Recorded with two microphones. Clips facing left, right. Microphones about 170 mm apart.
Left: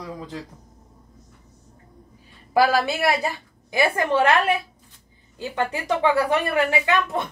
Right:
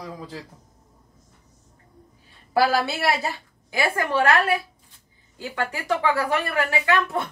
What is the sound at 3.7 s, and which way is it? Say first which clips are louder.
A woman's voice: left 3 dB; 20° left (ahead or behind).